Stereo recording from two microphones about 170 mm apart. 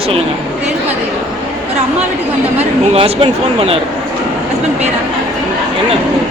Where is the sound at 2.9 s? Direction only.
35° right (ahead or behind).